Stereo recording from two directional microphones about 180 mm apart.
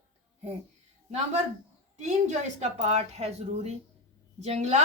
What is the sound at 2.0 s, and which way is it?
A woman's voice, 40° right (ahead or behind).